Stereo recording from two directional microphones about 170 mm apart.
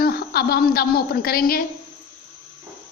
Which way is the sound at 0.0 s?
65° left (ahead or behind).